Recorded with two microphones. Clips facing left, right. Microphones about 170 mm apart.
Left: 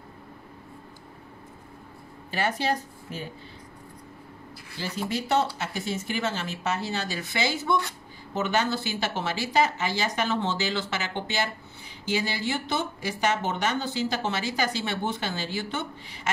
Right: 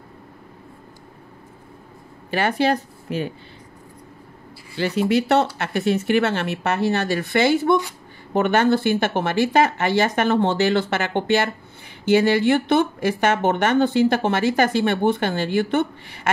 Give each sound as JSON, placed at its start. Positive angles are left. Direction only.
{"t": 2.3, "sound": "speech", "side_deg": -65}
{"t": 4.7, "sound": "speech", "side_deg": -70}